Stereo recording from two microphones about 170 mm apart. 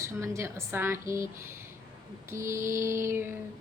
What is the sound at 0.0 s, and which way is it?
A woman's voice, 15° right (ahead or behind).